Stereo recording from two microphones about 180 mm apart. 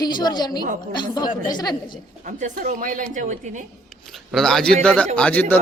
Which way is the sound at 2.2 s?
45° right (ahead or behind).